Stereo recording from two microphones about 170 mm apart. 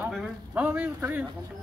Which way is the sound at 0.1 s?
5° right (ahead or behind).